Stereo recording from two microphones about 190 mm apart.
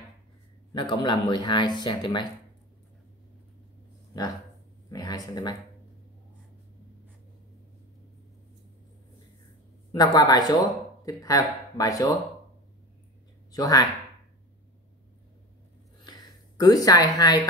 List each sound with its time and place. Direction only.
0.7 s speech: 25° left (ahead or behind)
4.1 s speech: 20° left (ahead or behind)
9.9 s speech: 20° left (ahead or behind)
13.5 s speech: 20° left (ahead or behind)
16.5 s speech: 20° left (ahead or behind)